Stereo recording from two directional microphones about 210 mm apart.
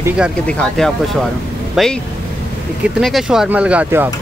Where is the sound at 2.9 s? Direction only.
Centre (ahead or behind).